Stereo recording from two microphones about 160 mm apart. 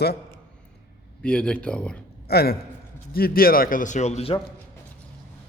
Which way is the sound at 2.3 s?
75° left (ahead or behind).